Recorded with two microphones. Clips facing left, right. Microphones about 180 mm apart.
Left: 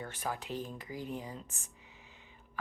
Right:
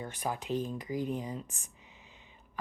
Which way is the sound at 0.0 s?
15° right (ahead or behind).